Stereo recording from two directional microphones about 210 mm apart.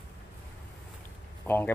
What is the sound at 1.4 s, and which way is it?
Speech, 10° left (ahead or behind).